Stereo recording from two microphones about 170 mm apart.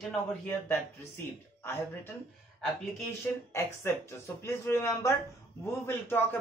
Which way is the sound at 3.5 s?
15° left (ahead or behind).